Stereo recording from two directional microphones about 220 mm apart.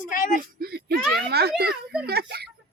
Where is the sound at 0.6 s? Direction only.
45° right (ahead or behind).